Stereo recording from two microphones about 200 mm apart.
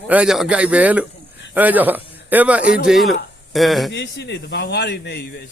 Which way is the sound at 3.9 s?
60° left (ahead or behind).